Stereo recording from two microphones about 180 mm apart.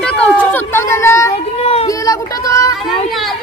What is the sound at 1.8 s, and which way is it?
Speech, 20° left (ahead or behind).